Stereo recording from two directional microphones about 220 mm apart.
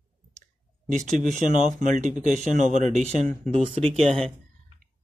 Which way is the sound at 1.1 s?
35° right (ahead or behind).